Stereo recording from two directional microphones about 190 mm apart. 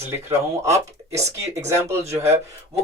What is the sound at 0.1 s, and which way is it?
Speech, 15° right (ahead or behind).